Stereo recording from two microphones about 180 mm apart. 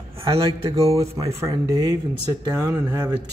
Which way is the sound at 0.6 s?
30° right (ahead or behind).